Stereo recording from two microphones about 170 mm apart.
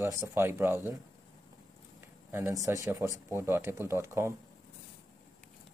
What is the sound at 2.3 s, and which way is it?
Speech, 20° right (ahead or behind).